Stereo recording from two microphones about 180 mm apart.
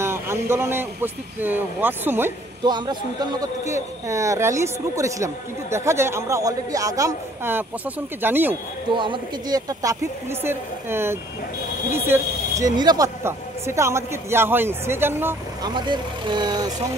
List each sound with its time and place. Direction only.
0.0 s a man's voice: 15° right (ahead or behind)
2.6 s a man's voice: 25° right (ahead or behind)
8.9 s a man's voice: 25° right (ahead or behind)
15.7 s speech: 25° right (ahead or behind)